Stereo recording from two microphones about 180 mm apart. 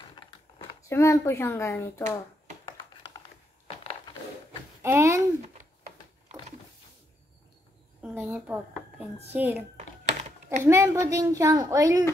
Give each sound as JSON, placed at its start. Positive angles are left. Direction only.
{"t": 0.8, "sound": "speech", "side_deg": 15}
{"t": 2.6, "sound": "a sound", "side_deg": 25}
{"t": 4.8, "sound": "a woman's voice", "side_deg": -15}
{"t": 8.2, "sound": "a woman's voice", "side_deg": -5}
{"t": 10.6, "sound": "a woman's voice", "side_deg": -15}